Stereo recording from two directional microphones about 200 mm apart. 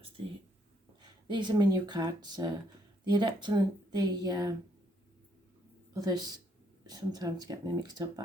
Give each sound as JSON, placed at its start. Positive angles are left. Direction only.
{"t": 1.3, "sound": "speech", "side_deg": -20}
{"t": 5.9, "sound": "speech", "side_deg": -20}